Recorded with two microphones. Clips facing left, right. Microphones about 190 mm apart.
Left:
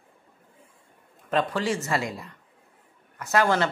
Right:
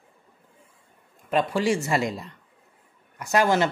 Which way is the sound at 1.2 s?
15° right (ahead or behind).